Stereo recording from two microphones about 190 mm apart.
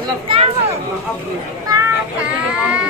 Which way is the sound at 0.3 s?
30° right (ahead or behind).